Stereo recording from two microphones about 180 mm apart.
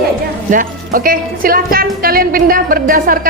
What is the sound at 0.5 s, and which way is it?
Speech, 50° right (ahead or behind).